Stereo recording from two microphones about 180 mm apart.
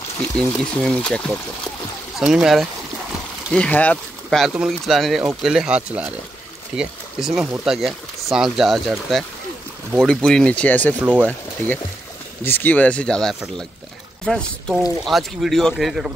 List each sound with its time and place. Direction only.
0.2 s speech: 5° left (ahead or behind)